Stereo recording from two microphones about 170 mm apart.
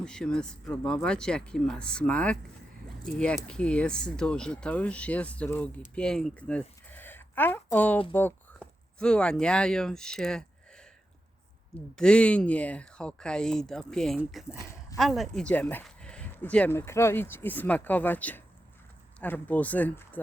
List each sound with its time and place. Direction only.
0.0 s speech: 5° left (ahead or behind)
11.9 s speech: 5° left (ahead or behind)
14.5 s speech: 15° left (ahead or behind)
14.9 s speech: centre (ahead or behind)